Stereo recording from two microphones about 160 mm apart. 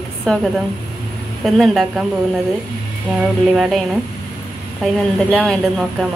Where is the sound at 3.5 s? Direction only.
Centre (ahead or behind).